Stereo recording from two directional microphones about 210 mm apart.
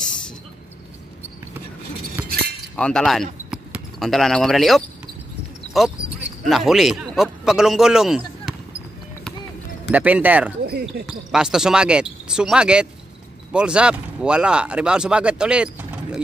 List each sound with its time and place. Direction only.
2.2 s chink: 45° right (ahead or behind)
2.7 s speech: 5° left (ahead or behind)
3.4 s basketball bounce: 5° right (ahead or behind)
5.7 s a sound: centre (ahead or behind)
6.5 s a man's voice: centre (ahead or behind)
9.8 s speech: 5° right (ahead or behind)
10.6 s speech: 45° right (ahead or behind)
11.1 s speech: 5° right (ahead or behind)